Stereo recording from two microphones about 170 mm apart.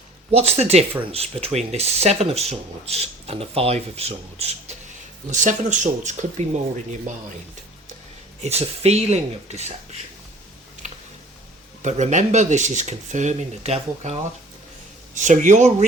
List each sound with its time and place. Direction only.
0.3 s speech: 35° right (ahead or behind)
5.3 s speech: 45° right (ahead or behind)
8.4 s speech: 40° right (ahead or behind)
11.8 s speech: 45° right (ahead or behind)